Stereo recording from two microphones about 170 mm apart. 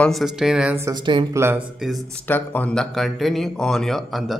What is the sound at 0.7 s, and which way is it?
Speech, 15° right (ahead or behind).